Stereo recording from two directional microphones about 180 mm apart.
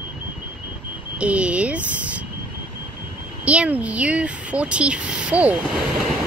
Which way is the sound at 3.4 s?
5° right (ahead or behind).